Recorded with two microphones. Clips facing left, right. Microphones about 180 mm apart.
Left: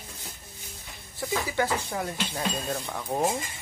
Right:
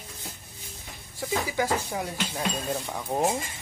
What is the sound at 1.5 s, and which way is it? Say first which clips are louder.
Speech: even; 10° right (ahead or behind).